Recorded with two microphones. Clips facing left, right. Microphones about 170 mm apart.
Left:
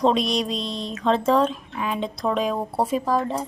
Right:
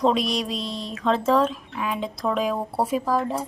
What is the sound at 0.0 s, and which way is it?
Speech, 5° right (ahead or behind).